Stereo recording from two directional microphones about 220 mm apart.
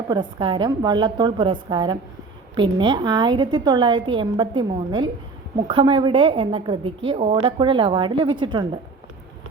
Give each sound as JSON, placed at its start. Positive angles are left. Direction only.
{"t": 0.1, "sound": "a woman's voice", "side_deg": -20}